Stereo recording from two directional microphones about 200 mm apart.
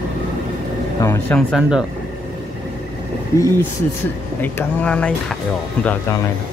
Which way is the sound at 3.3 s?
15° left (ahead or behind).